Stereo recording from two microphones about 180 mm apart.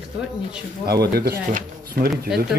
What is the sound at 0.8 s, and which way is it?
Speech, 60° right (ahead or behind).